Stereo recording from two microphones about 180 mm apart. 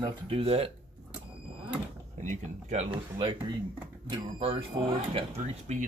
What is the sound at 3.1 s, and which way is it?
Speech, 25° right (ahead or behind).